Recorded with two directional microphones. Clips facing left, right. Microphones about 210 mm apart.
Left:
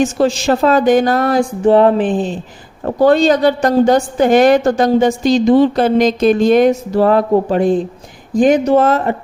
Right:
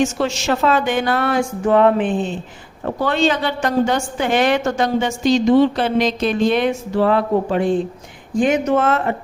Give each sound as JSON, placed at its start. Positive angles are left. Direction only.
{"t": 0.0, "sound": "a woman's voice", "side_deg": 35}